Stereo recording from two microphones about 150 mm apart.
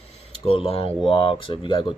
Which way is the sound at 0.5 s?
40° left (ahead or behind).